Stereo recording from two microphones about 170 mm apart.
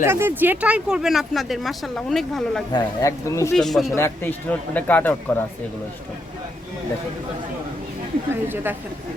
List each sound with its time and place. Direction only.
0.0 s speech: 15° right (ahead or behind); by 2.6 s 5° left (ahead or behind)
2.7 s speech: 20° left (ahead or behind)
3.5 s speech: centre (ahead or behind)
3.9 s speech: 15° left (ahead or behind)
8.3 s a woman's voice: 10° right (ahead or behind)